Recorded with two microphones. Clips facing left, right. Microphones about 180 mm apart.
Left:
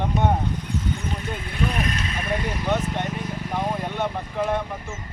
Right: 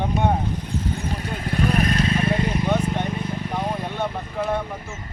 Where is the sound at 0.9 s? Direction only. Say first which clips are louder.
Right 1 dB; 35° right (ahead or behind).